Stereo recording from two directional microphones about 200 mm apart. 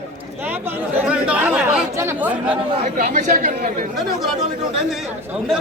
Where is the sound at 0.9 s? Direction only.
5° right (ahead or behind).